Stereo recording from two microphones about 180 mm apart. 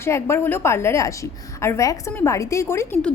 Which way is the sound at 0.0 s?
15° left (ahead or behind).